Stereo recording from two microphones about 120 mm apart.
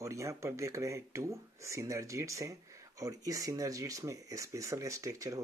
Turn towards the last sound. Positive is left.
turn(degrees=-25)  # may be behind; listen again after turning